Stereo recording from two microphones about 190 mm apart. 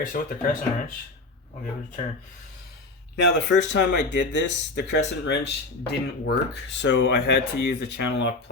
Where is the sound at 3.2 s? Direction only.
70° left (ahead or behind).